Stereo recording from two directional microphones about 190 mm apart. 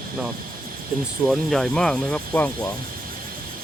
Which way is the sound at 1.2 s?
Centre (ahead or behind).